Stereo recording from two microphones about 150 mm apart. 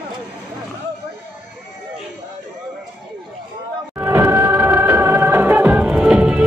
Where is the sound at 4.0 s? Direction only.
15° right (ahead or behind).